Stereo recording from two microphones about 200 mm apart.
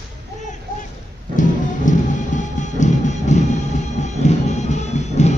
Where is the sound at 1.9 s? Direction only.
40° left (ahead or behind).